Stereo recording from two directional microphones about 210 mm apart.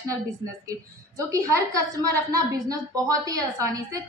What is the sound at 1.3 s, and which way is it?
A woman's voice, 15° right (ahead or behind).